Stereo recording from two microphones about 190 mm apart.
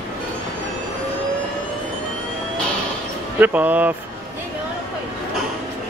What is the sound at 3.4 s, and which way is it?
Speech, 10° right (ahead or behind).